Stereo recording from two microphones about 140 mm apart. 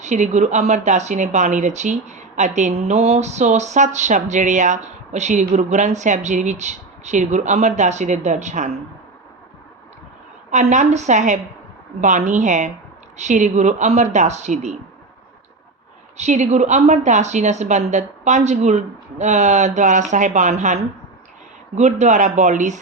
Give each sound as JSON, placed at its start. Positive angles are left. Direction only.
{"t": 0.0, "sound": "speech", "side_deg": -55}
{"t": 10.5, "sound": "speech", "side_deg": -55}
{"t": 16.1, "sound": "speech", "side_deg": -55}